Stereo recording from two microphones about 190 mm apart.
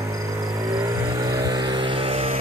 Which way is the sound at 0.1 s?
20° right (ahead or behind).